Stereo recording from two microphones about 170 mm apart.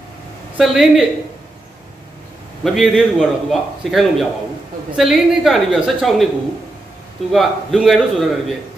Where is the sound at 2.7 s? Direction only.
Centre (ahead or behind).